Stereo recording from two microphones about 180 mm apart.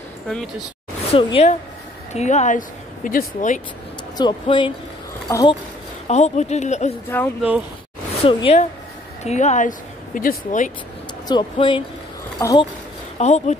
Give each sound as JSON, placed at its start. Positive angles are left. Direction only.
{"t": 1.1, "sound": "speech", "side_deg": 35}
{"t": 4.2, "sound": "speech", "side_deg": 25}
{"t": 6.0, "sound": "speech", "side_deg": 40}
{"t": 7.1, "sound": "speech", "side_deg": 10}
{"t": 8.2, "sound": "speech", "side_deg": 30}
{"t": 11.2, "sound": "speech", "side_deg": 25}
{"t": 13.2, "sound": "speech", "side_deg": 40}